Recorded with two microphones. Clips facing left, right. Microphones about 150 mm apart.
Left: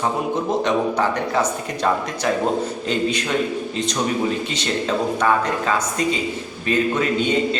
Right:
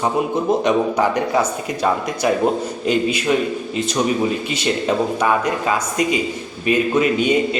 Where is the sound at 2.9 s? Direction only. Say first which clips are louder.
Right 5 dB; 10° right (ahead or behind).